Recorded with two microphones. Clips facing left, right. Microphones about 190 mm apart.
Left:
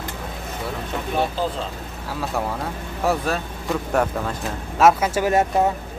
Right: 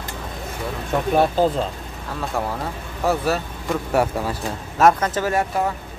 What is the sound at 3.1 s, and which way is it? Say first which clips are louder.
Speech: right 2 dB; 5° right (ahead or behind).